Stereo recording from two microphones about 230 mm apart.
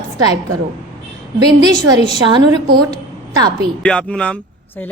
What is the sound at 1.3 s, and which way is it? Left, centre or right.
A woman's voice, centre.